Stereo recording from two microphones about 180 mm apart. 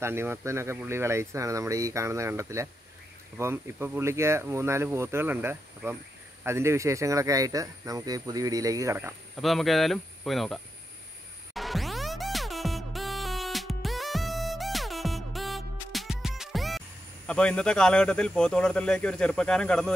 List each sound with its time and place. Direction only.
0.0 s speech: 15° right (ahead or behind)
9.4 s speech: centre (ahead or behind)
11.5 s music: centre (ahead or behind)
17.3 s speech: 5° left (ahead or behind)